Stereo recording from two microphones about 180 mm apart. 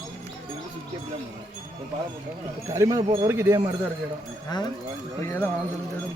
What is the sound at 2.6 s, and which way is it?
Speech, 20° right (ahead or behind).